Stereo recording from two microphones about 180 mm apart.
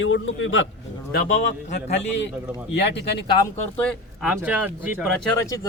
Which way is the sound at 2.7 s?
70° left (ahead or behind).